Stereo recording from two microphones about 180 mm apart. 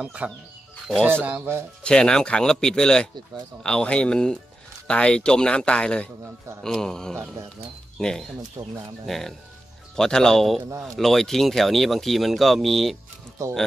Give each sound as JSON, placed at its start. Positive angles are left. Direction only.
{"t": 0.0, "sound": "speech", "side_deg": -5}
{"t": 1.8, "sound": "speech", "side_deg": 5}
{"t": 8.6, "sound": "speech", "side_deg": -20}
{"t": 9.0, "sound": "speech", "side_deg": 0}